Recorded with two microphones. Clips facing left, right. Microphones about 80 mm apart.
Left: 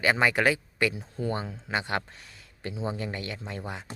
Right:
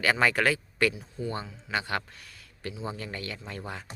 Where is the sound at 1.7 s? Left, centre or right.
Left.